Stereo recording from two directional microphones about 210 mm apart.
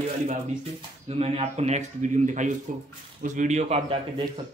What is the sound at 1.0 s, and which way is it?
Speech, 30° right (ahead or behind).